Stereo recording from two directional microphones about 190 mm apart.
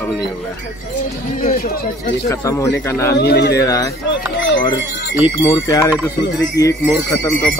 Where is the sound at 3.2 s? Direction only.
60° left (ahead or behind).